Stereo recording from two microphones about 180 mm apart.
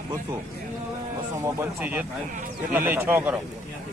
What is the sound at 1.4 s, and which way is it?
Speech, 10° right (ahead or behind).